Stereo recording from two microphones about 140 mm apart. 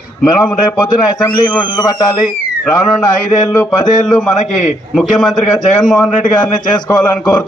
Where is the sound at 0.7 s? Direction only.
30° left (ahead or behind).